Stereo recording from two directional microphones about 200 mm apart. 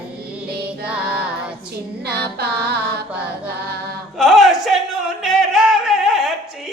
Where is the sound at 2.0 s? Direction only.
55° right (ahead or behind).